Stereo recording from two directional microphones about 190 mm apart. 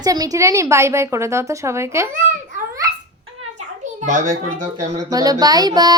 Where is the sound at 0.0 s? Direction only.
20° right (ahead or behind).